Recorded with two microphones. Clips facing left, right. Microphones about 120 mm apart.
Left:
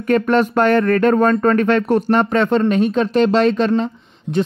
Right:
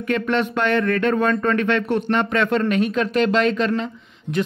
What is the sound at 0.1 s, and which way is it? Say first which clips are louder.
Speech: left 6 dB; 40° left (ahead or behind).